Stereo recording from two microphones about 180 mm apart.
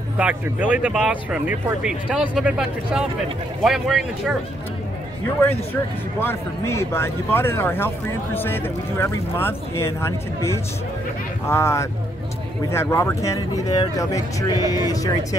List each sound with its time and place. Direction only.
0.2 s speech: 5° right (ahead or behind)
6.1 s speech: 15° left (ahead or behind)
11.4 s speech: 15° left (ahead or behind)